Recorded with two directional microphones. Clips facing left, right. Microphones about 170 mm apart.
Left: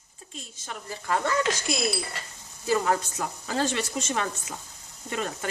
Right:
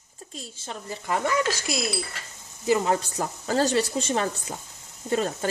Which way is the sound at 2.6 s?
20° right (ahead or behind).